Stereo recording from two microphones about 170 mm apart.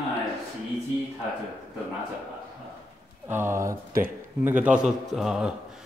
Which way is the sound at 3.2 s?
15° right (ahead or behind).